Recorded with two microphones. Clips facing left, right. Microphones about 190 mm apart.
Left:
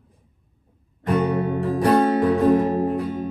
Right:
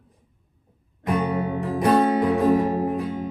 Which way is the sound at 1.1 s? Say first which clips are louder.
Left 4 dB; 10° right (ahead or behind).